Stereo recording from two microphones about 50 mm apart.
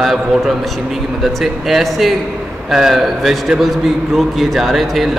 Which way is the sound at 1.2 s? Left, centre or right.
Centre.